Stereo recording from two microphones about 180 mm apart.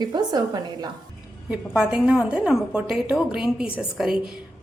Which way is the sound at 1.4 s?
5° right (ahead or behind).